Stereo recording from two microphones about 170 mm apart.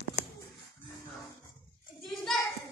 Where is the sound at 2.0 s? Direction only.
Centre (ahead or behind).